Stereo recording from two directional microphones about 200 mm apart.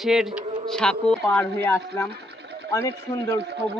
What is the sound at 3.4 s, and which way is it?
Speech, 60° right (ahead or behind).